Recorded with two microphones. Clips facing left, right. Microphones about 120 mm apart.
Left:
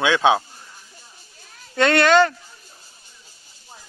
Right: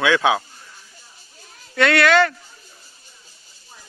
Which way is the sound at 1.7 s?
25° left (ahead or behind).